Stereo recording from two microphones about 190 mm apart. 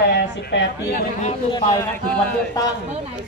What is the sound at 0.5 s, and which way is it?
Speech, 65° left (ahead or behind).